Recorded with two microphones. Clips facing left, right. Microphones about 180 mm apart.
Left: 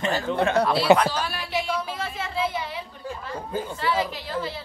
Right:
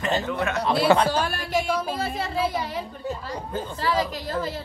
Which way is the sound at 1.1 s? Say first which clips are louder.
Right 3 dB; 50° right (ahead or behind).